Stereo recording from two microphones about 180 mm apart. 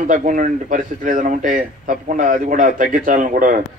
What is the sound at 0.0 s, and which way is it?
Speech, 45° right (ahead or behind).